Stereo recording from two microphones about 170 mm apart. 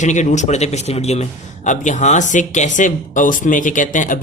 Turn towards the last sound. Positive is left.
turn(degrees=50)  # may be behind; listen again after turning